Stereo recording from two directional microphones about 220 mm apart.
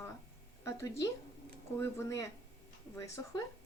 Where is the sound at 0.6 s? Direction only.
15° left (ahead or behind).